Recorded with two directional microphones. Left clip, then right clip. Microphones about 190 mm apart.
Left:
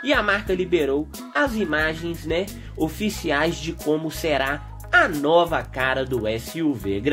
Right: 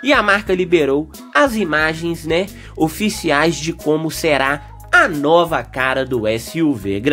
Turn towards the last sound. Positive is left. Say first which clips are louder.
# right 6 dB
turn(degrees=-35)  # may be behind; listen again after turning